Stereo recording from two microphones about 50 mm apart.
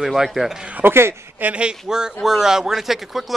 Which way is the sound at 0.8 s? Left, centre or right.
Right.